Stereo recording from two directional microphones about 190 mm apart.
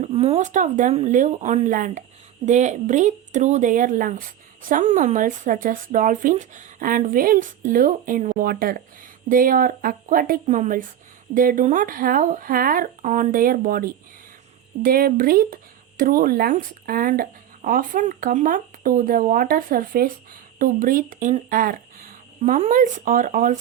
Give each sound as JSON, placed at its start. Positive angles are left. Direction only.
{"t": 0.0, "sound": "speech", "side_deg": -35}